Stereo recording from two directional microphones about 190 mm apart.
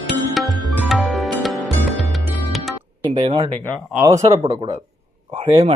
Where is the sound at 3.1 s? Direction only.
25° right (ahead or behind).